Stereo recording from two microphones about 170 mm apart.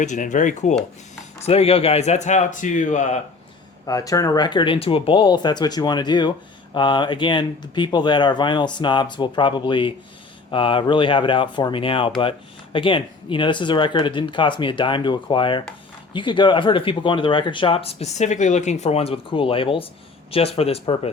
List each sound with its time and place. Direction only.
0.0 s speech: 45° left (ahead or behind)
3.8 s speech: 20° left (ahead or behind)